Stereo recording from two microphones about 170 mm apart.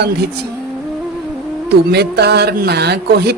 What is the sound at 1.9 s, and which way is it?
Speech, 75° right (ahead or behind).